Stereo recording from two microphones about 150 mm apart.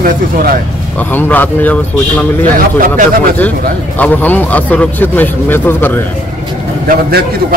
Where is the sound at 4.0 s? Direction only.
10° left (ahead or behind).